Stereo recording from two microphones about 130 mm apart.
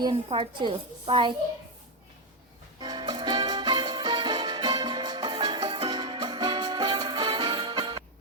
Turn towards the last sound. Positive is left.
turn(degrees=-40)  # may be behind; listen again after turning